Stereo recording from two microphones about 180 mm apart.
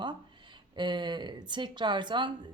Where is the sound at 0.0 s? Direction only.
25° right (ahead or behind).